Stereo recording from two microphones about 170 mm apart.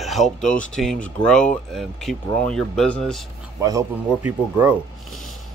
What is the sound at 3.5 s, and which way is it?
Speech, 20° right (ahead or behind).